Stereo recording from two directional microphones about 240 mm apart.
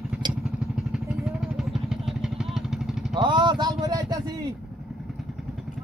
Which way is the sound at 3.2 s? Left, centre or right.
Centre.